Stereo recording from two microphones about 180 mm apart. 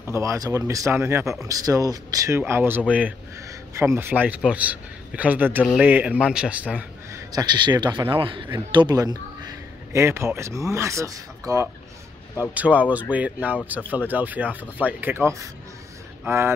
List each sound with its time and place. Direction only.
0.0 s a man's voice: 15° right (ahead or behind)